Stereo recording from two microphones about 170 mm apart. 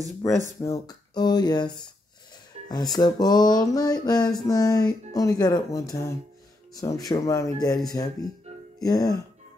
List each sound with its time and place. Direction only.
0.2 s speech: 20° left (ahead or behind)
2.7 s speech: 25° left (ahead or behind)